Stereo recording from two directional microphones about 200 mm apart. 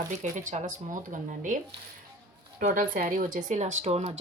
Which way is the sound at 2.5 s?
45° right (ahead or behind).